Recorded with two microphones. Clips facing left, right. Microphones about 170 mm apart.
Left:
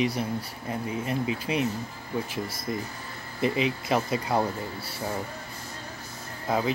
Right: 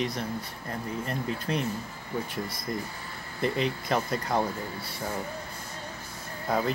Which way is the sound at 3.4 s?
5° left (ahead or behind).